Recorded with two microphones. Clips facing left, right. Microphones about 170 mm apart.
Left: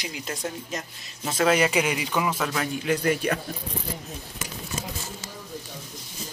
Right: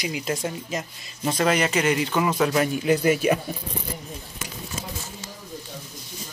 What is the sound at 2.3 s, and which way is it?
A man's voice, 5° right (ahead or behind).